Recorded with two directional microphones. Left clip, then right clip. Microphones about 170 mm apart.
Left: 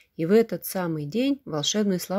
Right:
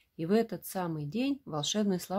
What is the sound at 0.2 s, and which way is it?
Speech, 20° left (ahead or behind).